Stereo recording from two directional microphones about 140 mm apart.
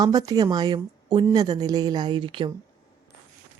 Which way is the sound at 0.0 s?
25° right (ahead or behind).